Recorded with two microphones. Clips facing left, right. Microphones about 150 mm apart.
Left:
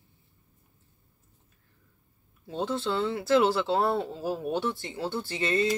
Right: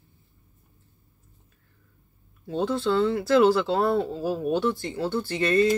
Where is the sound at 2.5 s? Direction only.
20° left (ahead or behind).